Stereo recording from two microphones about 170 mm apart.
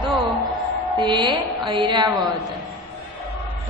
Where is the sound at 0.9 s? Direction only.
25° right (ahead or behind).